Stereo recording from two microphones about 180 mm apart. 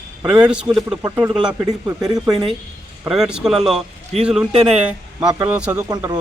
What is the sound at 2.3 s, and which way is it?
Speech, 30° right (ahead or behind).